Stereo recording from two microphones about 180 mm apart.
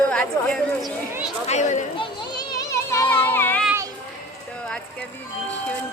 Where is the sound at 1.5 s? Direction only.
40° left (ahead or behind).